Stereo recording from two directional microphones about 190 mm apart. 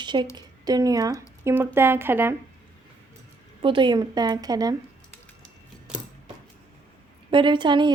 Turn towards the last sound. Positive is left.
turn(degrees=-25)  # may be behind; listen again after turning